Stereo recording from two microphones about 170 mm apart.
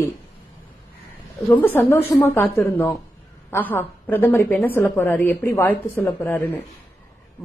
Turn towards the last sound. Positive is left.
turn(degrees=10)  # may be behind; listen again after turning